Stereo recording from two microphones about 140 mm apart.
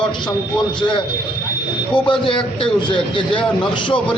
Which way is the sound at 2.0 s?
35° left (ahead or behind).